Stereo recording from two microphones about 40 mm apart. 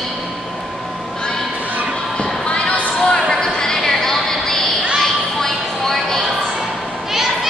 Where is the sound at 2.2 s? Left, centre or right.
Left; by 6.2 s centre.